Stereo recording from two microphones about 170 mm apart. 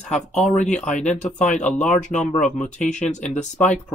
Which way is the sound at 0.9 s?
45° left (ahead or behind).